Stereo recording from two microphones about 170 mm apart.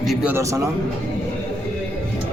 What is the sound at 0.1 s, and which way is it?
Speech, 5° right (ahead or behind).